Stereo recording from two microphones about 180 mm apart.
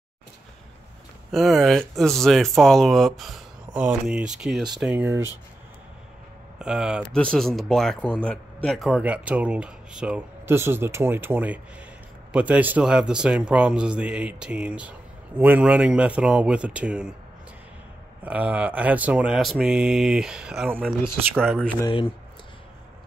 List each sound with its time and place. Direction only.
1.3 s speech: centre (ahead or behind)
6.6 s speech: 5° right (ahead or behind)
18.2 s speech: 10° right (ahead or behind)
21.8 s speech: 30° left (ahead or behind)